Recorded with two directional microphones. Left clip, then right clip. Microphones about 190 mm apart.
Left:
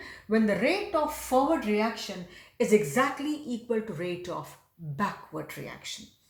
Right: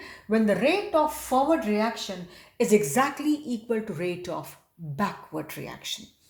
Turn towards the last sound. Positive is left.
turn(degrees=-40)  # may be behind; listen again after turning